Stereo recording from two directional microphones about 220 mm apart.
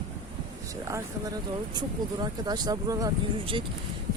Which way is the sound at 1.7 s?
20° right (ahead or behind).